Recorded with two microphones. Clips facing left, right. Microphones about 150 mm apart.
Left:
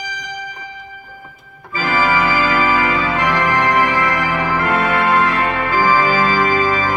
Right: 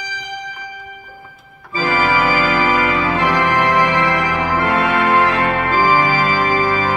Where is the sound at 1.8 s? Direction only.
20° right (ahead or behind).